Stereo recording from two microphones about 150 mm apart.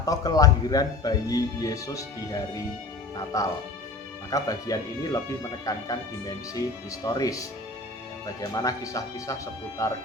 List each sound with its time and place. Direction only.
0.0 s speech: 25° left (ahead or behind)
3.3 s speech: 20° left (ahead or behind)